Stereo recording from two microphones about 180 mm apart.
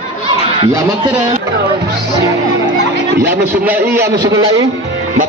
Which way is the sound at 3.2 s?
10° right (ahead or behind).